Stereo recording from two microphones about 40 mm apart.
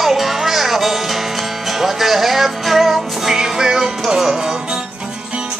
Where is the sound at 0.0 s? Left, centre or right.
Centre.